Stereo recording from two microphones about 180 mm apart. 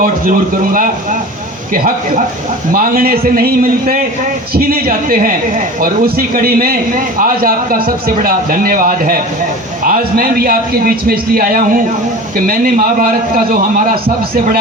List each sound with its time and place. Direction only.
0.0 s a man's voice: 50° right (ahead or behind)